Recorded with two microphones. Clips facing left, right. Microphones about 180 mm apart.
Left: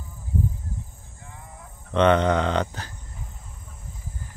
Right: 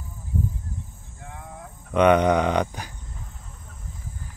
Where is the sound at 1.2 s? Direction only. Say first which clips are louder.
Right 5 dB; 65° right (ahead or behind).